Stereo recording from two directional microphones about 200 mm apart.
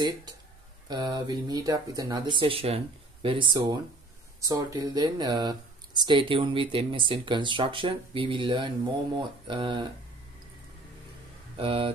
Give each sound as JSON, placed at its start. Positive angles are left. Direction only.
{"t": 0.8, "sound": "speech", "side_deg": -20}
{"t": 11.5, "sound": "speech", "side_deg": -25}